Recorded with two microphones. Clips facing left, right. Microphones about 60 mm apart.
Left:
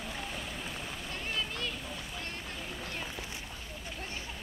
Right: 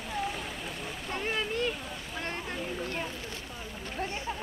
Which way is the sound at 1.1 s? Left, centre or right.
Right.